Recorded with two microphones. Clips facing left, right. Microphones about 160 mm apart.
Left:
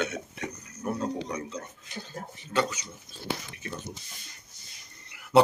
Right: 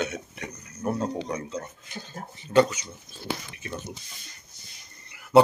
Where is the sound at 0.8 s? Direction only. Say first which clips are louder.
Right 4 dB; 35° right (ahead or behind).